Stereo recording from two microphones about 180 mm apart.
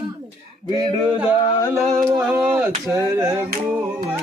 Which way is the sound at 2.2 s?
10° right (ahead or behind).